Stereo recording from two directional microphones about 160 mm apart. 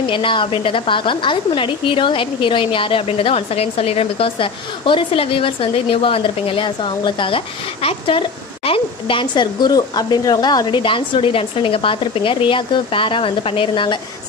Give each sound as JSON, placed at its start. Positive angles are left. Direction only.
{"t": 0.0, "sound": "a woman's voice", "side_deg": 30}